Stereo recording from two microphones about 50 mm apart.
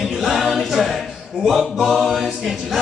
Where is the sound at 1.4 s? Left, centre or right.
Centre.